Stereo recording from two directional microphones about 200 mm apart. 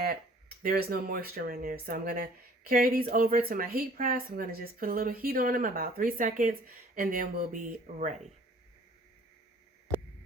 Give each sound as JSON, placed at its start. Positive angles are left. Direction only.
{"t": 0.0, "sound": "speech", "side_deg": -50}